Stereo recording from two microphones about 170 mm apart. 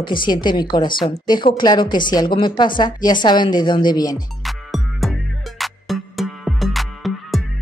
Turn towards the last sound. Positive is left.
turn(degrees=0)  # may be behind; listen again after turning